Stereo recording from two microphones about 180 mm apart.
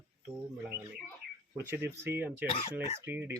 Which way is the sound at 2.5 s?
30° left (ahead or behind).